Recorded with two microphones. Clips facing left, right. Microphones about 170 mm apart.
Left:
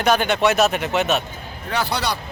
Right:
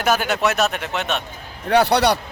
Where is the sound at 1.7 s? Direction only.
65° right (ahead or behind).